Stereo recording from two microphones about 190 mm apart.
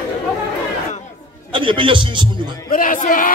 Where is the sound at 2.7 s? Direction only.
45° left (ahead or behind).